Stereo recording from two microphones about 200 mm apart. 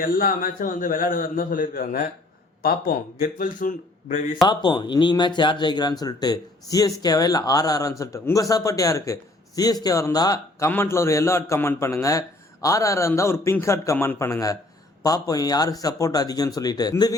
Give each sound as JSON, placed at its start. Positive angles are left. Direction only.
{"t": 0.0, "sound": "a man's voice", "side_deg": 45}
{"t": 4.4, "sound": "a man's voice", "side_deg": 20}